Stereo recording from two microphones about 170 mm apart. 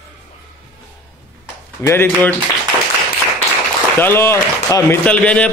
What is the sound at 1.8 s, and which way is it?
Speech, 15° left (ahead or behind).